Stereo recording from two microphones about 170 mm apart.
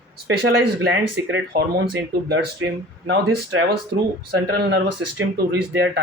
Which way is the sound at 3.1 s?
75° right (ahead or behind).